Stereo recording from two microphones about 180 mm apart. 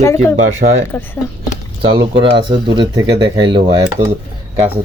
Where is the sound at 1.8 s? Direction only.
25° right (ahead or behind).